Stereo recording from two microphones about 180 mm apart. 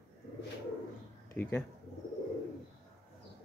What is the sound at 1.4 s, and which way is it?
Speech, 10° left (ahead or behind).